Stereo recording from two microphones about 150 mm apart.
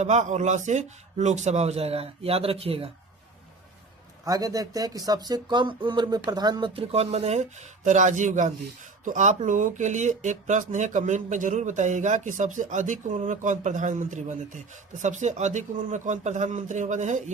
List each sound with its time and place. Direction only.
0.0 s speech: 50° right (ahead or behind)
4.3 s speech: 25° right (ahead or behind); by 17.3 s 50° right (ahead or behind)